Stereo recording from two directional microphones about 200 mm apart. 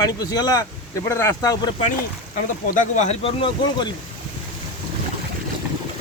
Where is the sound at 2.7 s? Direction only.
35° left (ahead or behind).